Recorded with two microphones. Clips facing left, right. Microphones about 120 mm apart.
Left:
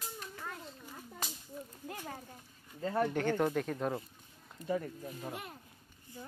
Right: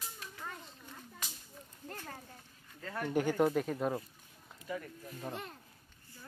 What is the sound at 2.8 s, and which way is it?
Speech, 25° left (ahead or behind).